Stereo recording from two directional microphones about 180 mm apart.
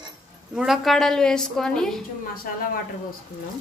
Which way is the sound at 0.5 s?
Centre (ahead or behind).